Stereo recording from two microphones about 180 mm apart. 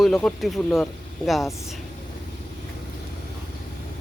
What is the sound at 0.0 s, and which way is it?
Speech, centre (ahead or behind).